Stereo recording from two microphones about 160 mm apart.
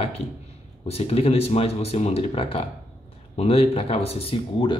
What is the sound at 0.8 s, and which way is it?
Speech, 40° left (ahead or behind).